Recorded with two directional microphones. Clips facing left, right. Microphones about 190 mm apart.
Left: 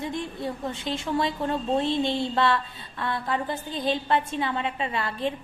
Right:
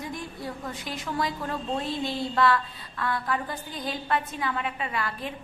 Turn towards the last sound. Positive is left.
turn(degrees=25)  # may be behind; listen again after turning